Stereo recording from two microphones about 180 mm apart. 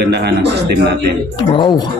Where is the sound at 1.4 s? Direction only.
25° left (ahead or behind).